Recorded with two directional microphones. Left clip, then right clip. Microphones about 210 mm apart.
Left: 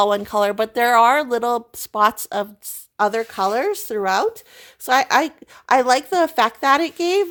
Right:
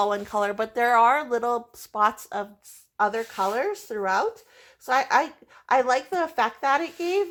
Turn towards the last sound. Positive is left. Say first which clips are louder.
# left 6 dB
turn(degrees=45)  # may be behind; listen again after turning